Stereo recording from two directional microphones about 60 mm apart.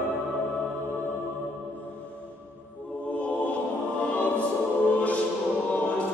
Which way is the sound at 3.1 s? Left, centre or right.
Left.